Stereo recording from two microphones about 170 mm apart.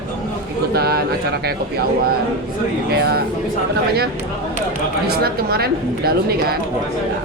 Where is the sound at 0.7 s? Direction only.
65° right (ahead or behind).